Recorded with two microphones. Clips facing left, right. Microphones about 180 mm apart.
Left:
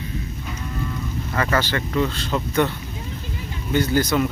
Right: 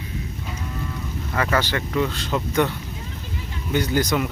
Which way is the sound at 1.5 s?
10° right (ahead or behind).